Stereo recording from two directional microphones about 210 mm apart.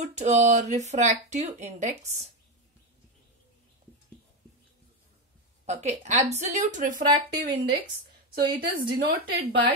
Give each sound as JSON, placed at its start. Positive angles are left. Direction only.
{"t": 0.1, "sound": "speech", "side_deg": -30}
{"t": 5.7, "sound": "speech", "side_deg": -35}
{"t": 7.1, "sound": "speech", "side_deg": -20}
{"t": 8.5, "sound": "a woman's voice", "side_deg": -45}